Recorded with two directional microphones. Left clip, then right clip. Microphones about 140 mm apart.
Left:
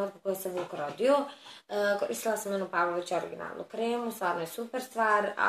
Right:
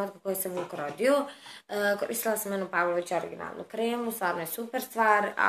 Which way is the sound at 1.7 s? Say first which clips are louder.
Even; centre (ahead or behind).